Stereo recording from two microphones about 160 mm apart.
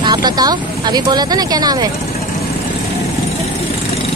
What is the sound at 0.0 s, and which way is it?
Speech, 25° right (ahead or behind).